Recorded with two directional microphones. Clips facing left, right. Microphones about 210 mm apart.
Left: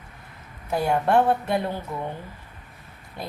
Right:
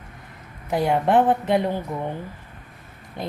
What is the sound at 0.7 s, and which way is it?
A woman's voice, 20° right (ahead or behind).